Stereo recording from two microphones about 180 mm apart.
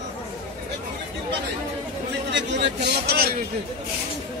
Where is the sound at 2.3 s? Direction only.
80° right; by 3.4 s 55° right (ahead or behind).